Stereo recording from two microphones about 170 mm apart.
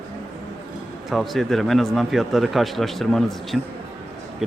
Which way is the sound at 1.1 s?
Centre (ahead or behind).